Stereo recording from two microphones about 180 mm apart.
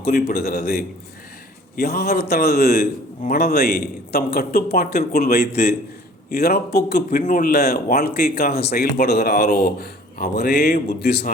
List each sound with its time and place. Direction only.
0.0 s speech: 60° left (ahead or behind)